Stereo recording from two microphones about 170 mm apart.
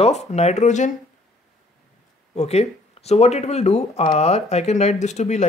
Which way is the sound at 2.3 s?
40° left (ahead or behind).